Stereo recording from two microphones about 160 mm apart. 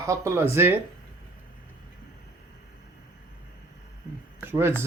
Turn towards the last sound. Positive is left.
turn(degrees=-15)  # may be behind; listen again after turning